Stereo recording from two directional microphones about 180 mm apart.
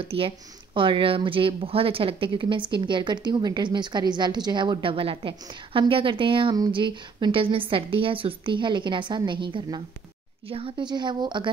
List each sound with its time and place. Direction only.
0.0 s a woman's voice: 30° right (ahead or behind)